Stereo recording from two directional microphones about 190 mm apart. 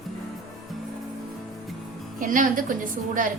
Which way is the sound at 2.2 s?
45° right (ahead or behind).